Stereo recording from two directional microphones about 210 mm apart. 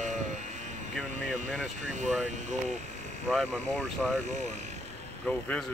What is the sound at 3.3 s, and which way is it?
Speech, 5° left (ahead or behind).